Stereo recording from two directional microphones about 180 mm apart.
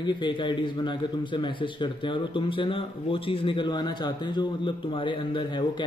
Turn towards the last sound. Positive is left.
turn(degrees=25)  # may be behind; listen again after turning